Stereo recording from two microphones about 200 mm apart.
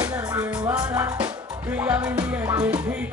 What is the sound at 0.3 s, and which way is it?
Music, 20° right (ahead or behind).